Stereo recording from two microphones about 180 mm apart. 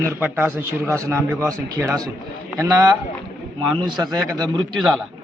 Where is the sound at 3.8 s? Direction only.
25° right (ahead or behind).